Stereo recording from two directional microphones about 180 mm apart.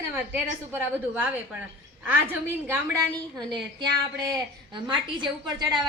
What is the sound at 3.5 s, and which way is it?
A woman's voice, 25° right (ahead or behind).